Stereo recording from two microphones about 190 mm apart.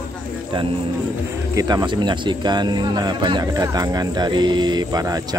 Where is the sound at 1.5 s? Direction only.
20° right (ahead or behind).